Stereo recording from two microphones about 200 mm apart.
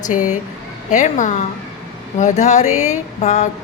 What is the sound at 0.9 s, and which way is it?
Speech, 35° left (ahead or behind).